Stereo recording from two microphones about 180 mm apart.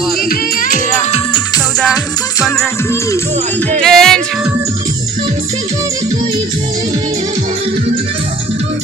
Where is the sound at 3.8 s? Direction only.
Centre (ahead or behind).